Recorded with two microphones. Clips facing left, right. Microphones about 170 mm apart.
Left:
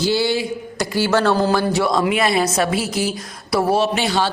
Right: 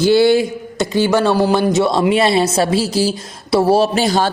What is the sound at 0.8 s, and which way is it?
A woman's voice, 20° right (ahead or behind).